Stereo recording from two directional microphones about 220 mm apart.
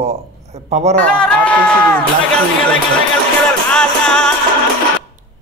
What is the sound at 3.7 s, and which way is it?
Music, 5° left (ahead or behind).